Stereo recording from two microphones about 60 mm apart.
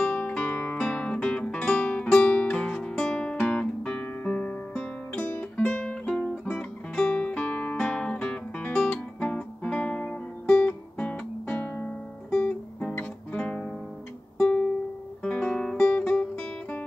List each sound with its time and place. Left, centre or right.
0.0 s guitar: left
2.0 s music: centre
11.0 s guitar: left
15.2 s guitar: centre